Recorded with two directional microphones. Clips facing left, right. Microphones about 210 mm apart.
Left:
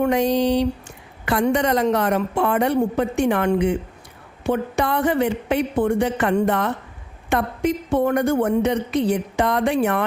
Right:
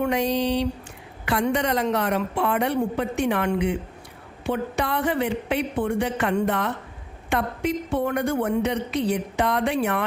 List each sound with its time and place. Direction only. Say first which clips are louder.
0.0 s a woman's voice: left 4 dB; 45° left (ahead or behind)